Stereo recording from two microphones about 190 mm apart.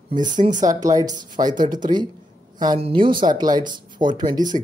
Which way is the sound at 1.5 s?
45° right (ahead or behind).